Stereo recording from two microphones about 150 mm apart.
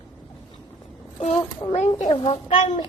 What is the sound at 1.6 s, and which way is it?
Speech, 25° left (ahead or behind).